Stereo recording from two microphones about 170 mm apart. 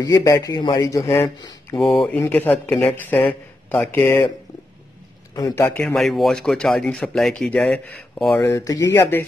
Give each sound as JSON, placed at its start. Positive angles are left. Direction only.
{"t": 0.0, "sound": "speech", "side_deg": 20}
{"t": 2.0, "sound": "speech", "side_deg": 5}
{"t": 5.3, "sound": "a man's voice", "side_deg": 20}
{"t": 5.8, "sound": "speech", "side_deg": 0}
{"t": 8.4, "sound": "speech", "side_deg": 20}